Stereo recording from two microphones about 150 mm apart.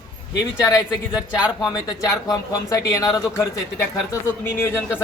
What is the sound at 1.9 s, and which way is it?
Speech, 25° left (ahead or behind).